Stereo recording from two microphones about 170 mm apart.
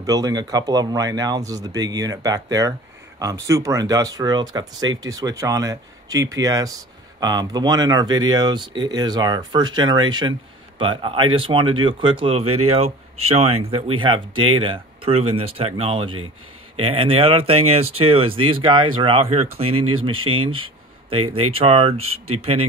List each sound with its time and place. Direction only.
0.0 s speech: 20° right (ahead or behind)